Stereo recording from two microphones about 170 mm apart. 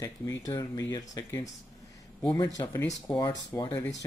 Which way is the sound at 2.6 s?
20° left (ahead or behind).